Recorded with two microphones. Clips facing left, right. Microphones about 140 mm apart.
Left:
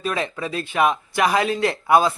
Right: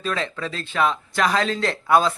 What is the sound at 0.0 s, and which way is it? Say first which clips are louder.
A man's voice: left 1 dB; 15° left (ahead or behind).